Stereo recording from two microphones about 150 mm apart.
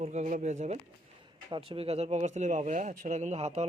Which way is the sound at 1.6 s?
40° right (ahead or behind).